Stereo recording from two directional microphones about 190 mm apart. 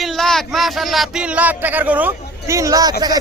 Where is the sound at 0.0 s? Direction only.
Centre (ahead or behind).